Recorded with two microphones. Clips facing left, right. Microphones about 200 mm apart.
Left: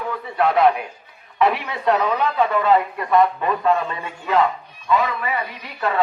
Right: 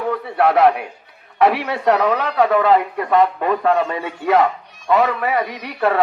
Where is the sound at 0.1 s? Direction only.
65° right (ahead or behind).